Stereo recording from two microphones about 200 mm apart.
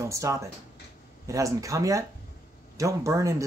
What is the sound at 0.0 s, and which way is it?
Speech, 15° right (ahead or behind).